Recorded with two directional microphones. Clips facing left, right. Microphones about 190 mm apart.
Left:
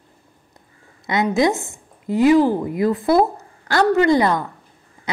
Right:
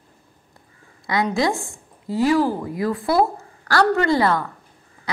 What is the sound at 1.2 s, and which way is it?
A woman's voice, 20° left (ahead or behind).